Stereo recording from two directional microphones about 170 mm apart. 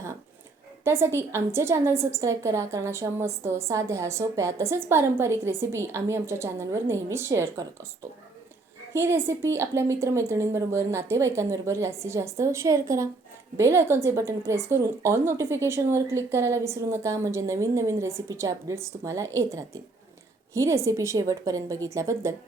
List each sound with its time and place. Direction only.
0.9 s a woman's voice: 15° right (ahead or behind)
8.9 s a woman's voice: 15° right (ahead or behind)